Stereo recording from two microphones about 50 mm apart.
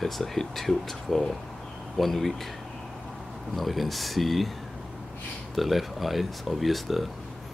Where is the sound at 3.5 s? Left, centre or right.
Centre.